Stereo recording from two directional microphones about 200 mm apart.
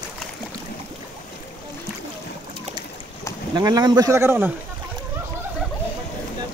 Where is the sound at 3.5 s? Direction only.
20° right (ahead or behind).